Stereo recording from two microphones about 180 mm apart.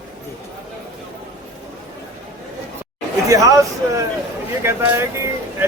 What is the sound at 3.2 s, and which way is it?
Speech, 20° right (ahead or behind).